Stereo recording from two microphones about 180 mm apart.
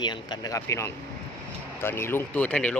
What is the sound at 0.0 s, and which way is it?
Speech, 25° left (ahead or behind).